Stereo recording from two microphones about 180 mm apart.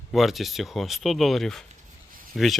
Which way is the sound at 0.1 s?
Centre (ahead or behind).